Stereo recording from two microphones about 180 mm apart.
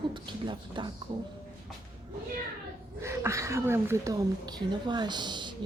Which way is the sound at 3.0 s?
15° right (ahead or behind).